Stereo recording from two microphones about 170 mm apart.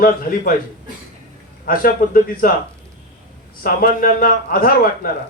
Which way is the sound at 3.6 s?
55° left (ahead or behind).